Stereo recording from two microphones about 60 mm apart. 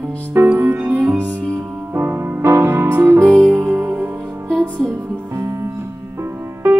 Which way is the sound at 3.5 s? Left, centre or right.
Right.